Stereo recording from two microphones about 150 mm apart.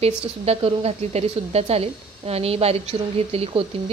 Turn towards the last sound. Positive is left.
turn(degrees=-40)  # may be behind; listen again after turning